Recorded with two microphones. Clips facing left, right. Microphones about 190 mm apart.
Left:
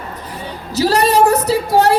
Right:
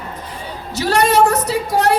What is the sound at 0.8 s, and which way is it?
Female singing, 35° left (ahead or behind).